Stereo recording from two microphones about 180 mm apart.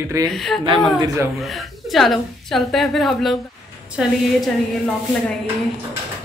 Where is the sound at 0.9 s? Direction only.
20° right (ahead or behind).